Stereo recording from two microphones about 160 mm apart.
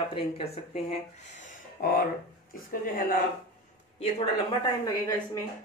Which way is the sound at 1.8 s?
65° left (ahead or behind).